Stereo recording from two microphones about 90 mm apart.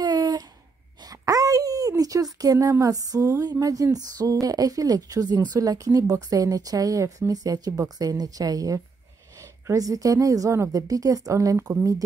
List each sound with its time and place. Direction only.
0.0 s a sound: 50° right (ahead or behind)
1.0 s wail: 40° right (ahead or behind)
2.4 s a woman's voice: 40° right (ahead or behind)